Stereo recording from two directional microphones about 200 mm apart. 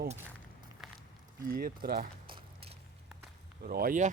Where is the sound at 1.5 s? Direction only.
45° right (ahead or behind).